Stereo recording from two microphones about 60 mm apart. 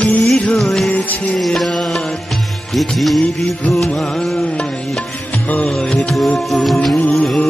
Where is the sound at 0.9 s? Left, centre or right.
Left.